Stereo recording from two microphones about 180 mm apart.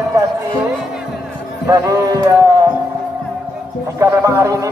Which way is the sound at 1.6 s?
20° right (ahead or behind).